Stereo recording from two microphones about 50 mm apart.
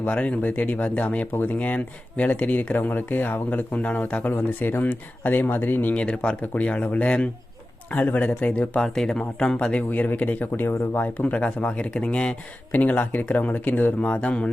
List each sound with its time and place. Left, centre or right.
0.0 s speech: left
4.3 s speech: left
5.9 s speech: left
8.8 s speech: centre
9.7 s speech: left
12.7 s speech: left